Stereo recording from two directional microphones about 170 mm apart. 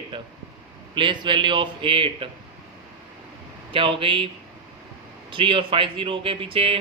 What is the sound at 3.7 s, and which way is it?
Speech, 30° right (ahead or behind).